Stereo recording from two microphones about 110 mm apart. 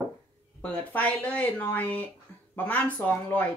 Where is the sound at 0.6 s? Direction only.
15° left (ahead or behind).